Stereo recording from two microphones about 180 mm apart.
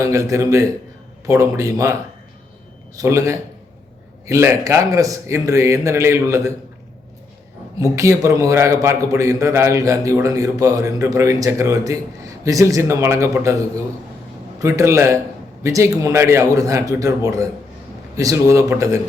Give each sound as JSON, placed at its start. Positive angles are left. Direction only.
{"t": 0.0, "sound": "a man's voice", "side_deg": -15}
{"t": 7.8, "sound": "a man's voice", "side_deg": -15}
{"t": 14.6, "sound": "a man's voice", "side_deg": -15}